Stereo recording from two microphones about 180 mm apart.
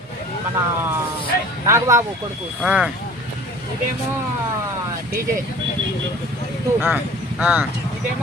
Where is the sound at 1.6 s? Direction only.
15° right (ahead or behind).